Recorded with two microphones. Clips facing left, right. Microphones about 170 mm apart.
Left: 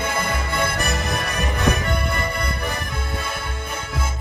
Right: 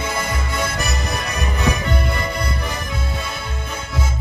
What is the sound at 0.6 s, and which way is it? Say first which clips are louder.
Music: even; 55° left (ahead or behind).